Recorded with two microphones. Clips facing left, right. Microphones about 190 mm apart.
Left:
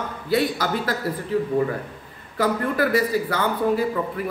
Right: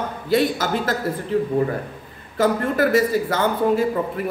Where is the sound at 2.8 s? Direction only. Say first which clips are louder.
Right 4 dB; 45° right (ahead or behind).